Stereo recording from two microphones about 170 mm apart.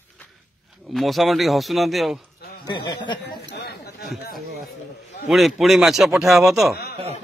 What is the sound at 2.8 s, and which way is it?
Speech, 25° left (ahead or behind).